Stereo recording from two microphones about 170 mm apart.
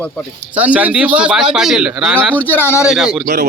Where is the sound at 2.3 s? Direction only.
10° left (ahead or behind).